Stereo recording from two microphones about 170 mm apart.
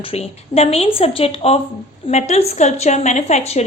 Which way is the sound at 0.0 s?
35° left (ahead or behind).